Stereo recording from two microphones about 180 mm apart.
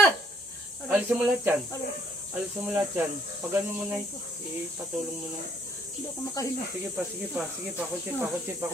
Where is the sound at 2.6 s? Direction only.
10° right (ahead or behind).